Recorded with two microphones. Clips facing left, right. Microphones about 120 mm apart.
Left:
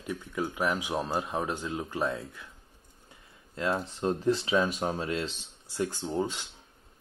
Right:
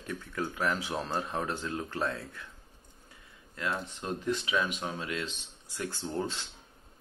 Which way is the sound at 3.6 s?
30° left (ahead or behind).